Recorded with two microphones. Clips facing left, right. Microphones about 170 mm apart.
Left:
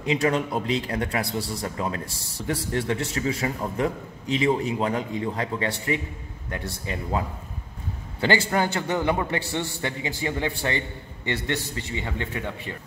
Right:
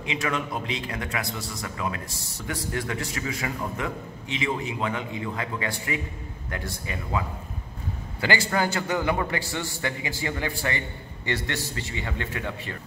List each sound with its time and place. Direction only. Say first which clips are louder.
0.0 s a man's voice: left 6 dB; 35° left (ahead or behind)
8.2 s a man's voice: left 2 dB; 25° left (ahead or behind)